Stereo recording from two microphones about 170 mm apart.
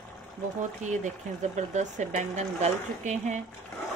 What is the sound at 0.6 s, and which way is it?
Speech, 45° right (ahead or behind).